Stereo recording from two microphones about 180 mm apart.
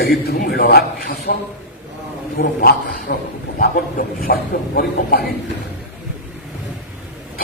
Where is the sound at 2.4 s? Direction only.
60° left (ahead or behind).